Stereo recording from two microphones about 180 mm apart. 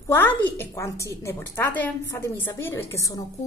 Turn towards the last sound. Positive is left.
turn(degrees=20)  # may be behind; listen again after turning